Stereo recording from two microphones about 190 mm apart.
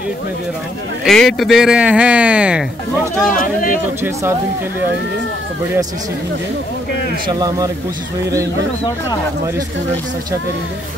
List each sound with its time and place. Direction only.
1.0 s speech: centre (ahead or behind)
3.3 s speech: 45° left (ahead or behind)
4.0 s speech: 15° right (ahead or behind)
7.3 s speech: 20° right (ahead or behind)